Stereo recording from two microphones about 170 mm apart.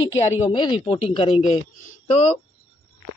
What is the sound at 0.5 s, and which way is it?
Speech, 25° left (ahead or behind).